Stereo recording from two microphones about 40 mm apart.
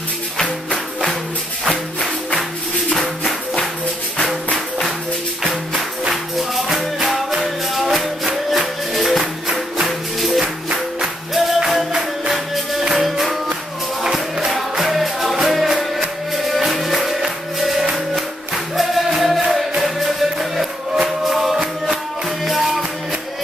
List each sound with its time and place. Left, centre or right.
1.7 s music: centre
6.3 s music: centre
9.2 s music: right
9.8 s music: centre
10.4 s music: right
11.3 s music: centre
14.5 s music: centre
18.8 s music: centre